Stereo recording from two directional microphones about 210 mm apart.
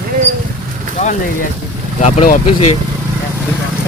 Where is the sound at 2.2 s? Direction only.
35° left (ahead or behind).